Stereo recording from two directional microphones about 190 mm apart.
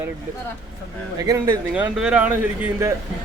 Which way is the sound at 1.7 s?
5° right (ahead or behind).